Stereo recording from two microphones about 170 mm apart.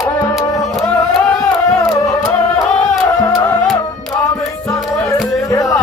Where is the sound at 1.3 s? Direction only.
Centre (ahead or behind).